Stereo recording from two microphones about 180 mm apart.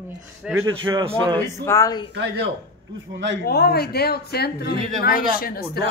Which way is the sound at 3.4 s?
60° left (ahead or behind).